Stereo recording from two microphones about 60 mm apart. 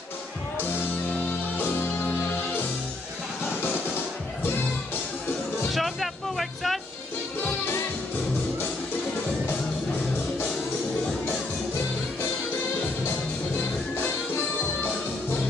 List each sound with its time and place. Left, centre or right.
0.6 s music: left
5.7 s music: centre
14.0 s music: left